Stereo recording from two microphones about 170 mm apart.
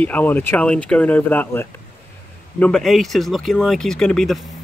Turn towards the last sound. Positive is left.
turn(degrees=0)  # may be behind; listen again after turning